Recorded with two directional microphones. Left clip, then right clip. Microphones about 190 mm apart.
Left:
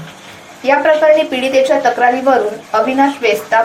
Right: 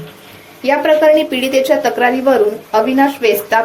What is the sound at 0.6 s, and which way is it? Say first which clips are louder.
A woman's voice: left 1 dB; 30° right (ahead or behind).